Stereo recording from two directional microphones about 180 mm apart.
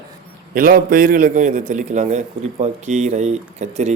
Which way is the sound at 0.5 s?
50° right (ahead or behind).